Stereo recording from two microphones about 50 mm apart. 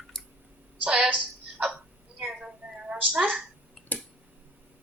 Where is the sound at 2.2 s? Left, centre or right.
Centre.